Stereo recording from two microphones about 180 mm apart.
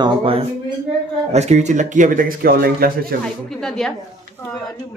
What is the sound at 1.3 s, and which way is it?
A man's voice, 40° right (ahead or behind).